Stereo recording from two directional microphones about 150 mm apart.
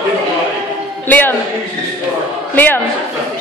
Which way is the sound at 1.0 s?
10° left (ahead or behind).